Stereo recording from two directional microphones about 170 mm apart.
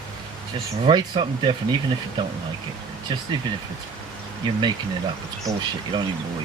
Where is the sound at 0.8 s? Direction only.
30° right (ahead or behind).